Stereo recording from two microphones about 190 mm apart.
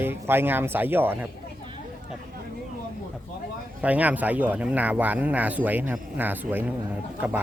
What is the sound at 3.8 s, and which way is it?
Speech, 5° right (ahead or behind).